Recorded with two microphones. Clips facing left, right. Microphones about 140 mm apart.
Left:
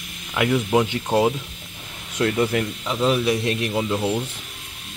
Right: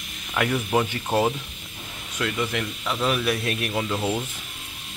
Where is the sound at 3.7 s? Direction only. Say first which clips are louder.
Left 2 dB; 10° left (ahead or behind).